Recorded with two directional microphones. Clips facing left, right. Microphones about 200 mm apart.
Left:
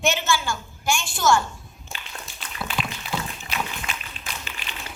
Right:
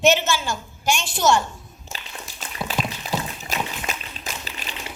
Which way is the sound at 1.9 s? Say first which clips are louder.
Right 1 dB; centre (ahead or behind).